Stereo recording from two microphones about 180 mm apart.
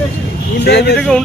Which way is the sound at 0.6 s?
70° left (ahead or behind).